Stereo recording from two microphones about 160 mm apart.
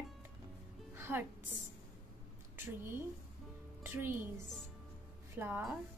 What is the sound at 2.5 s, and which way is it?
A woman's voice, 15° right (ahead or behind).